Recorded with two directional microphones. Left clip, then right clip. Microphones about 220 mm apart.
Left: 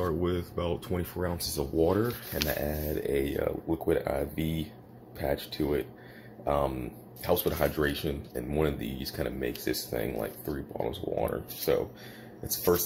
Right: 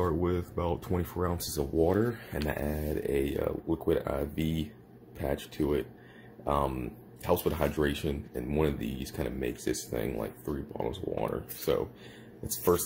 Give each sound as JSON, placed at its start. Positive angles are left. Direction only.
{"t": 0.0, "sound": "speech", "side_deg": -15}